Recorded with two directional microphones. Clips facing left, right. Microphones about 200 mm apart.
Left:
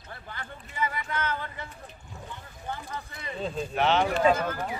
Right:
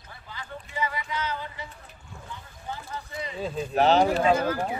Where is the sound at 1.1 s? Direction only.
55° left (ahead or behind).